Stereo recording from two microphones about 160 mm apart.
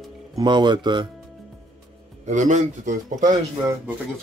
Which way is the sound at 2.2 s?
50° right (ahead or behind).